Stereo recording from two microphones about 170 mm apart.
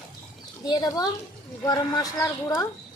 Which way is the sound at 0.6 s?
20° left (ahead or behind).